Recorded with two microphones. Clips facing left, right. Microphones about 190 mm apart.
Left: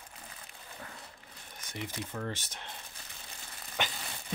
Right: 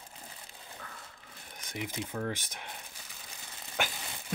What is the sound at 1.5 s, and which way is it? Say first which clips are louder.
Speech: right 2 dB; 10° right (ahead or behind).